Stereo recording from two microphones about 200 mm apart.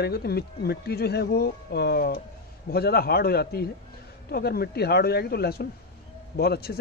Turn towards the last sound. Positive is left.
turn(degrees=50)  # may be behind; listen again after turning